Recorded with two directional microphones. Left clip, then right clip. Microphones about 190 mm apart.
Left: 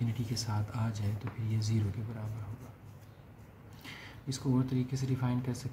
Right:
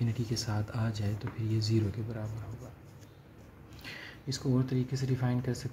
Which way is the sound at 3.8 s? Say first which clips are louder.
Right 3 dB; 15° right (ahead or behind).